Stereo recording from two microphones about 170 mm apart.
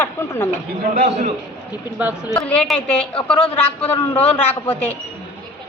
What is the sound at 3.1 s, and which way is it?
Speech, 35° left (ahead or behind).